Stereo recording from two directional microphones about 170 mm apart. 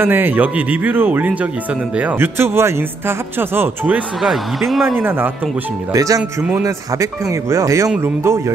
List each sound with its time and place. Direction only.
0.0 s a man's voice: 10° right (ahead or behind)
5.9 s a man's voice: 20° right (ahead or behind)